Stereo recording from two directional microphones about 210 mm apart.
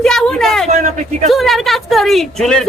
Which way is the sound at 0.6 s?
35° right (ahead or behind).